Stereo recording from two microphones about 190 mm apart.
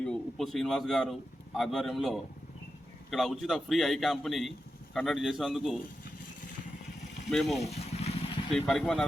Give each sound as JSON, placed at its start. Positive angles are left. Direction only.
{"t": 0.0, "sound": "a man's voice", "side_deg": 5}
{"t": 7.3, "sound": "a man's voice", "side_deg": 0}
{"t": 7.6, "sound": "vehicle", "side_deg": 35}
{"t": 8.5, "sound": "a man's voice", "side_deg": 5}